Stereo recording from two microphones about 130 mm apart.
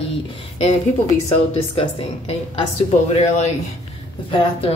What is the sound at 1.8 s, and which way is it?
Speech, 50° left (ahead or behind).